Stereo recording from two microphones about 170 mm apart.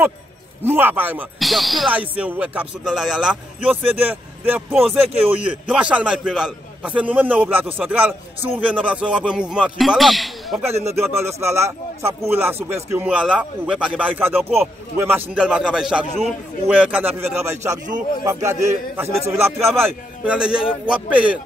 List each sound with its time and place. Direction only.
0.7 s speech: 10° right (ahead or behind)
1.4 s speech: centre (ahead or behind)
10.6 s speech: 15° right (ahead or behind)